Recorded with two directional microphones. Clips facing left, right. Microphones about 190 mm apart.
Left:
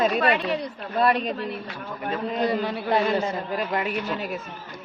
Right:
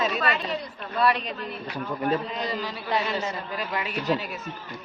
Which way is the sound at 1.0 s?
45° left (ahead or behind).